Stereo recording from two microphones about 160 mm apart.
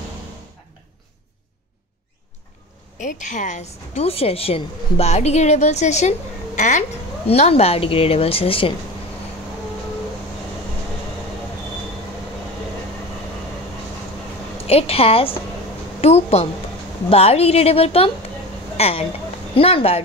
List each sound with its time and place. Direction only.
3.0 s a woman's voice: 50° left (ahead or behind); by 8.7 s 35° left (ahead or behind)
14.7 s a woman's voice: 40° left (ahead or behind)